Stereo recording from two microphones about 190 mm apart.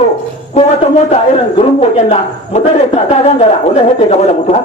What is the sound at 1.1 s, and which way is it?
A man's voice, 35° left (ahead or behind).